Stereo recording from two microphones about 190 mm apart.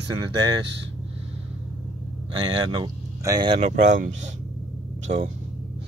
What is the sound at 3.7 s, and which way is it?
Speech, 40° right (ahead or behind).